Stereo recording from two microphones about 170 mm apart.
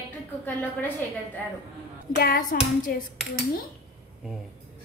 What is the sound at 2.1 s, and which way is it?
Clapping, 60° left (ahead or behind).